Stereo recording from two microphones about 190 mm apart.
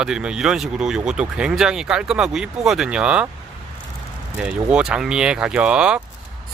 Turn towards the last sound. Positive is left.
turn(degrees=-5)  # may be behind; listen again after turning